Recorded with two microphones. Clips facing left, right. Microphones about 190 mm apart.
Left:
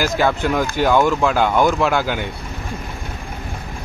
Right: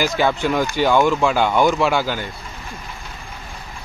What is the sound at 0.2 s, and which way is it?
Speech, centre (ahead or behind).